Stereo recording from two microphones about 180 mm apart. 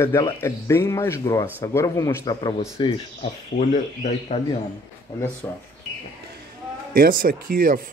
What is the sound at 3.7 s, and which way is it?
Speech, 40° left (ahead or behind).